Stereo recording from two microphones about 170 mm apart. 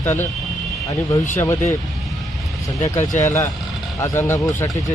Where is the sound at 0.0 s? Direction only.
15° left (ahead or behind).